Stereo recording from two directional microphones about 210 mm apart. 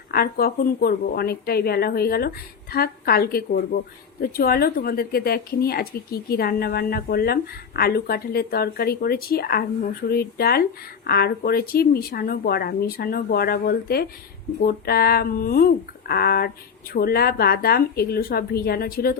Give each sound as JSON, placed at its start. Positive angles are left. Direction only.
{"t": 0.1, "sound": "speech", "side_deg": 45}